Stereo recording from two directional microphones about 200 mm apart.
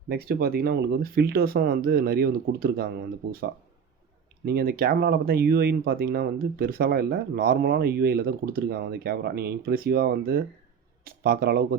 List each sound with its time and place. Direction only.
0.1 s speech: 50° right (ahead or behind)
4.4 s speech: 50° right (ahead or behind)